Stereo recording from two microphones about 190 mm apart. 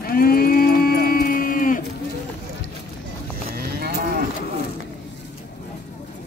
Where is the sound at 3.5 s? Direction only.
55° right (ahead or behind).